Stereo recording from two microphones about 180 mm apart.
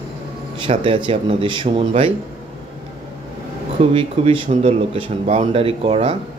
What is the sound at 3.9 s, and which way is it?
Speech, 35° right (ahead or behind).